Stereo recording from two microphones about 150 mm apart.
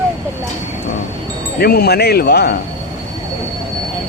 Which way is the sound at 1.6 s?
90° left.